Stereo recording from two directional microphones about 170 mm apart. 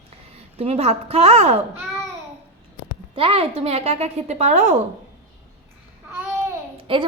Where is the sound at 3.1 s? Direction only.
30° right (ahead or behind).